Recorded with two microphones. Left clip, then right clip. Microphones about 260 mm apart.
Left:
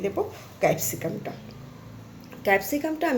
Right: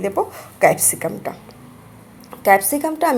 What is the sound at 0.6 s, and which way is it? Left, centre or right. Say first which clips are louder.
Speech: right 9 dB; centre.